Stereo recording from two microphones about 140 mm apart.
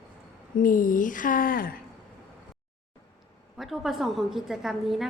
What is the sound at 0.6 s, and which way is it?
Speech, 80° left.